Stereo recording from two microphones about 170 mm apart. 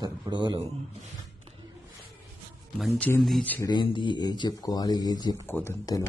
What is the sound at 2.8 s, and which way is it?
Speech, centre (ahead or behind).